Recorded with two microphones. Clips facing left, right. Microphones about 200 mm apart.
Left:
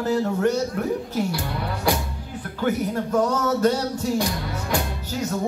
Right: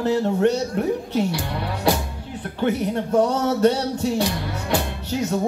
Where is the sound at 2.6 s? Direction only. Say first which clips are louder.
Right 1 dB; 30° right (ahead or behind).